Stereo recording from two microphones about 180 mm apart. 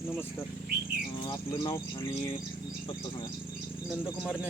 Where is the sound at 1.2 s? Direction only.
25° left (ahead or behind).